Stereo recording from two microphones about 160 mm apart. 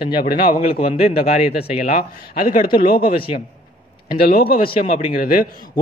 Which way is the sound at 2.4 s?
60° left (ahead or behind).